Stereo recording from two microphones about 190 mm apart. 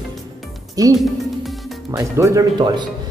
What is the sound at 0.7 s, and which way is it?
Speech, 20° right (ahead or behind).